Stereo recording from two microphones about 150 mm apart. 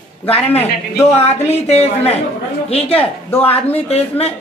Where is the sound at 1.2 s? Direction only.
45° left (ahead or behind).